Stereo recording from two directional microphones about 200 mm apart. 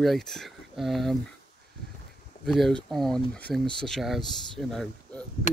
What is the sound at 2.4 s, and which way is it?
Speech, centre (ahead or behind).